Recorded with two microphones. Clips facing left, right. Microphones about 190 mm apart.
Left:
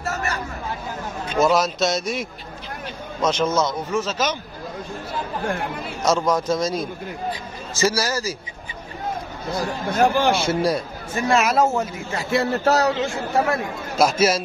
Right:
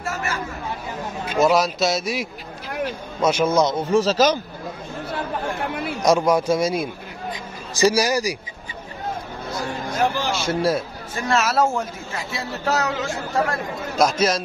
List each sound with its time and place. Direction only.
1.3 s a man's voice: centre (ahead or behind)
3.7 s speech: 35° right (ahead or behind)
6.0 s a man's voice: 10° right (ahead or behind)
9.8 s speech: 50° left (ahead or behind)
10.5 s a man's voice: centre (ahead or behind)
12.2 s speech: 55° left (ahead or behind)
12.6 s a man's voice: 35° left (ahead or behind)
13.9 s speech: 5° left (ahead or behind)